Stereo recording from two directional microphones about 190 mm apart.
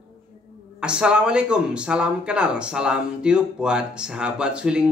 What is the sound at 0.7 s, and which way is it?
A man's voice, 5° right (ahead or behind).